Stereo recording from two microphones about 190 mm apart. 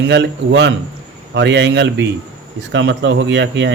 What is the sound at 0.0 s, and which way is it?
Speech, 70° right (ahead or behind).